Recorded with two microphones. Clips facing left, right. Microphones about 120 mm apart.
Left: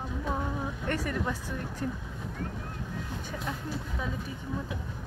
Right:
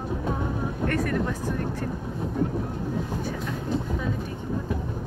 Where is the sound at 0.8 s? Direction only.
50° right (ahead or behind).